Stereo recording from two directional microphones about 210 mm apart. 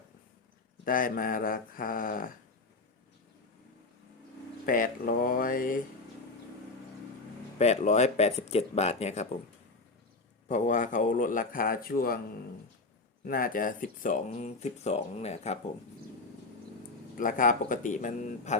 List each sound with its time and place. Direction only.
0.9 s speech: 40° left (ahead or behind)
4.6 s speech: 40° left (ahead or behind)
7.6 s speech: 30° left (ahead or behind)
10.5 s speech: 35° left (ahead or behind)
13.2 s speech: 40° left (ahead or behind)
17.2 s speech: 40° left (ahead or behind)